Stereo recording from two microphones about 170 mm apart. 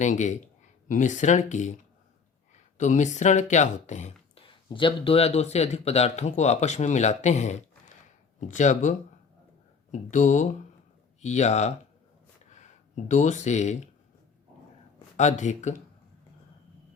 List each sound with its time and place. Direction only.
0.0 s speech: 45° left (ahead or behind)
2.7 s speech: 45° left (ahead or behind)
4.4 s speech: 30° left (ahead or behind)
13.1 s speech: 45° left (ahead or behind)
15.1 s speech: 45° left (ahead or behind)